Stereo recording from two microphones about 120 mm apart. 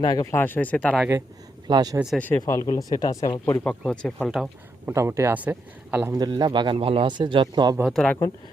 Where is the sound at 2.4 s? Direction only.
30° left (ahead or behind).